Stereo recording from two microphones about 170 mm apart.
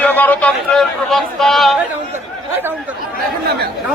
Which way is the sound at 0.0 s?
10° left (ahead or behind).